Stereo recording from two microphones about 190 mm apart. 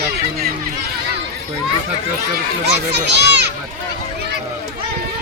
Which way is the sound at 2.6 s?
60° right (ahead or behind).